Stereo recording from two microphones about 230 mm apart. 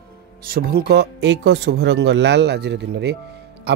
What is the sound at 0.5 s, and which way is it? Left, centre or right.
Speech, right.